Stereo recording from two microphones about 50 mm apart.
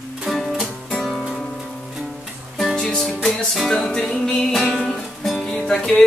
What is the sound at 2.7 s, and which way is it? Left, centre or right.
Music, centre.